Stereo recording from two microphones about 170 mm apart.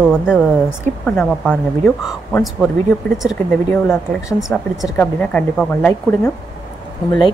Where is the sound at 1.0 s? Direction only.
10° left (ahead or behind).